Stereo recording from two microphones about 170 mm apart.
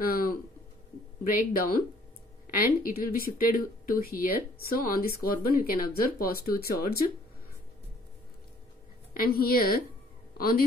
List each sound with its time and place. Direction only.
0.0 s a sound: 60° left (ahead or behind)
1.5 s speech: 60° left (ahead or behind)
9.1 s speech: 60° left (ahead or behind)